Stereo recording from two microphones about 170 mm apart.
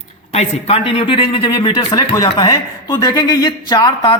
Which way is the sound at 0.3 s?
35° left (ahead or behind).